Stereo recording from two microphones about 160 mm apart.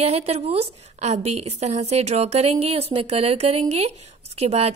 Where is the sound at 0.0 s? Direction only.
40° right (ahead or behind).